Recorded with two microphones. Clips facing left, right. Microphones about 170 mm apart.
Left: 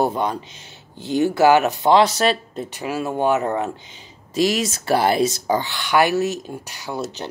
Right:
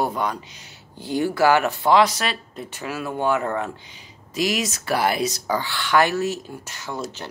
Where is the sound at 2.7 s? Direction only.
20° left (ahead or behind).